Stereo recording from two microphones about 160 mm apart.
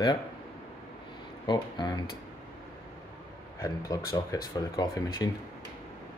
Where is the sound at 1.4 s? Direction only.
25° left (ahead or behind).